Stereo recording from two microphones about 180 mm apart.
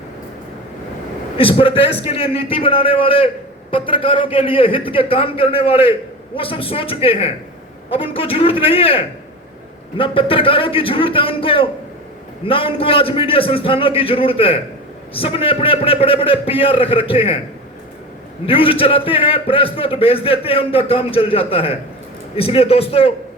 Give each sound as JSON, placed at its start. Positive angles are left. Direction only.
{"t": 1.4, "sound": "a man's voice", "side_deg": 30}
{"t": 18.4, "sound": "a man's voice", "side_deg": 30}